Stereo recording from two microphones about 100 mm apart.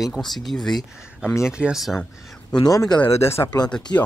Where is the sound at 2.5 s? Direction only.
40° left (ahead or behind).